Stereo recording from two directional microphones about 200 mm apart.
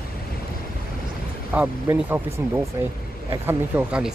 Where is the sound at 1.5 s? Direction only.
10° right (ahead or behind).